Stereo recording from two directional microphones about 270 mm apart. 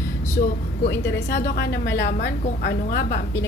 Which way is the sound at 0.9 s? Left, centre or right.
Left.